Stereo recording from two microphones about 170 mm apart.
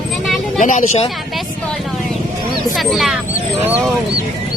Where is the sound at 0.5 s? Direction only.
45° left (ahead or behind).